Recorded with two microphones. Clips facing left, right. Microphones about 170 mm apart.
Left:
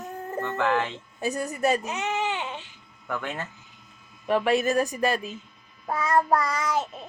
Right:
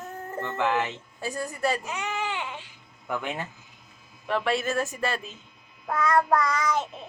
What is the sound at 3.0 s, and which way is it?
Speech, 10° right (ahead or behind).